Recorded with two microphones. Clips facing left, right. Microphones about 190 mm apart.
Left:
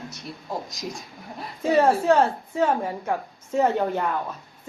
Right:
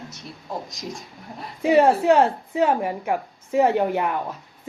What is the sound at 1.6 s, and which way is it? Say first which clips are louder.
A woman's voice: right 3 dB; 15° right (ahead or behind).